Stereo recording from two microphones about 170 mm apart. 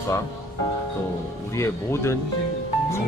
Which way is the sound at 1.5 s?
15° left (ahead or behind).